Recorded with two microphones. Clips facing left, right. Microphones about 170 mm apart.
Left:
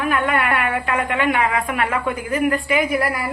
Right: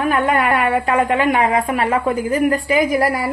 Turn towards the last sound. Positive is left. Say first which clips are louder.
# right 4 dB
turn(degrees=-40)  # may be behind; listen again after turning